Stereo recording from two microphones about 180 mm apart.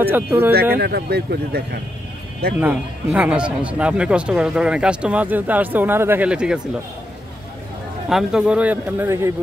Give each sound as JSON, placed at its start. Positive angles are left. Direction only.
{"t": 0.0, "sound": "speech", "side_deg": -10}
{"t": 0.7, "sound": "speech", "side_deg": -65}
{"t": 2.6, "sound": "speech", "side_deg": -10}
{"t": 8.1, "sound": "speech", "side_deg": 0}